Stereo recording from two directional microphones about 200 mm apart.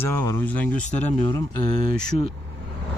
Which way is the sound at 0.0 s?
10° left (ahead or behind).